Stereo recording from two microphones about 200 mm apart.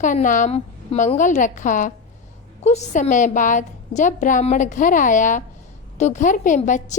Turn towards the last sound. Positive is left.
turn(degrees=40)  # may be behind; listen again after turning